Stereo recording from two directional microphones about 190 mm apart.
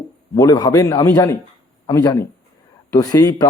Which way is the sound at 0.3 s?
20° left (ahead or behind).